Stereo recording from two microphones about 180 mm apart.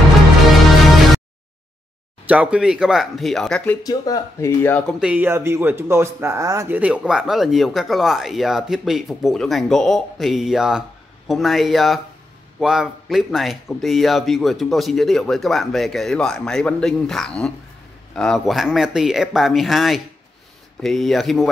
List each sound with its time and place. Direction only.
2.2 s speech: 5° right (ahead or behind)
3.8 s speech: 20° left (ahead or behind)
5.0 s speech: 10° right (ahead or behind)